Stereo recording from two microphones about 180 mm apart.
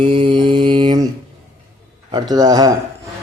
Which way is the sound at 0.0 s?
30° right (ahead or behind).